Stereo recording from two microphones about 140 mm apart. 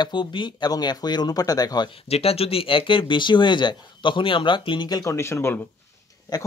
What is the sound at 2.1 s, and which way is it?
Speech, 45° left (ahead or behind).